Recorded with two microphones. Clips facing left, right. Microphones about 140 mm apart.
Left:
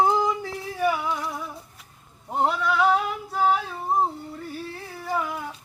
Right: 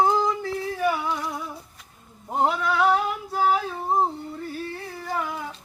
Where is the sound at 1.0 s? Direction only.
Centre (ahead or behind).